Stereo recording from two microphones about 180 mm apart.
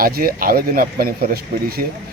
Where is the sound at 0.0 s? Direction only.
55° right (ahead or behind).